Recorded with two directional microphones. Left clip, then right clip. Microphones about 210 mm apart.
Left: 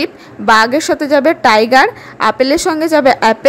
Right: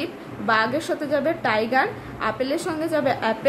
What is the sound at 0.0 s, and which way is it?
A woman's voice, 45° left (ahead or behind).